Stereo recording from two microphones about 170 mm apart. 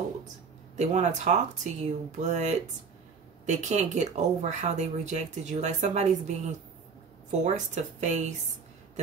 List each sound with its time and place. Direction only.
0.7 s speech: 40° right (ahead or behind)